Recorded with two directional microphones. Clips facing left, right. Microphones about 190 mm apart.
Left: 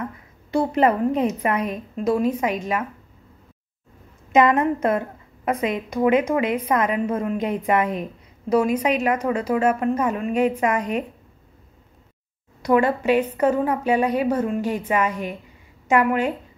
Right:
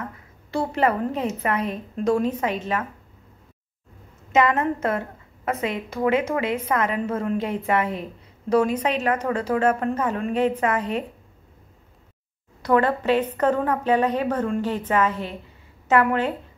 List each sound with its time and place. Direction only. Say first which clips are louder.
0.5 s a woman's voice: left 3 dB; 15° left (ahead or behind)
4.3 s a woman's voice: left 3 dB; 15° left (ahead or behind)
12.6 s a woman's voice: left 1 dB; 10° left (ahead or behind)